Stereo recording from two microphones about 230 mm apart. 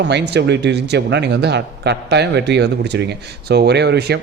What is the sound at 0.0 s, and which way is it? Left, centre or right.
Speech, right.